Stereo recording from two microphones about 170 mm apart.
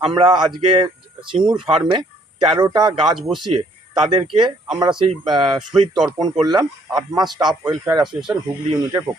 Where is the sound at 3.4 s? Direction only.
25° right (ahead or behind).